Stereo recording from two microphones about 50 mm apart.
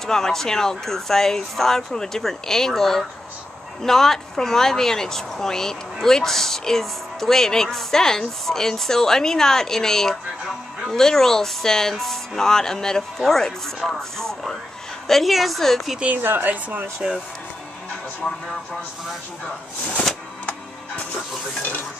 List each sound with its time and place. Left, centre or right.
0.0 s a woman's voice: centre
16.2 s speech: right